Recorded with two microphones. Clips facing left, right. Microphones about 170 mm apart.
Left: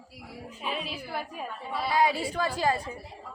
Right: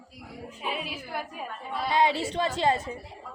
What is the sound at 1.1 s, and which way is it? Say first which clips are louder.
Speech: even; 5° left (ahead or behind).